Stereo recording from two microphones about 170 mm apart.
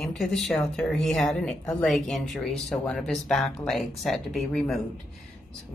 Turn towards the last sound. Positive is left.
turn(degrees=0)  # may be behind; listen again after turning